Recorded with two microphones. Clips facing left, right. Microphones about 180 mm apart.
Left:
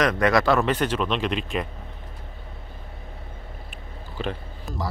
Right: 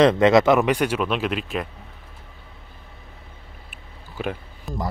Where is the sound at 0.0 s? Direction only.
25° right (ahead or behind); by 1.7 s 5° right (ahead or behind).